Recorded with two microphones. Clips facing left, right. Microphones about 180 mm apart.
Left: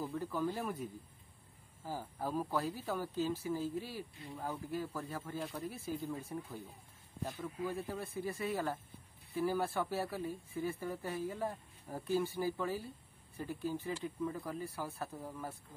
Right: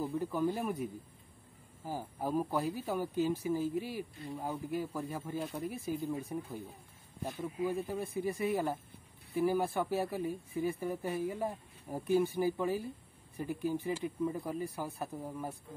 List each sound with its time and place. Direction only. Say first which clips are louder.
0.0 s speech: right 4 dB; 15° right (ahead or behind)
1.9 s speech: right 3 dB; 15° right (ahead or behind)